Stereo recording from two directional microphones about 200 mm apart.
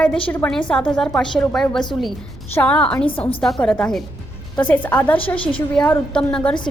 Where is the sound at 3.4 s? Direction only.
5° left (ahead or behind).